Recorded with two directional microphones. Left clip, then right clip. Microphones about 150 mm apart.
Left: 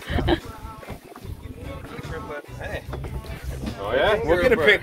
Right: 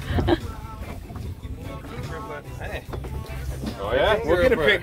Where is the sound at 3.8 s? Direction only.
20° right (ahead or behind).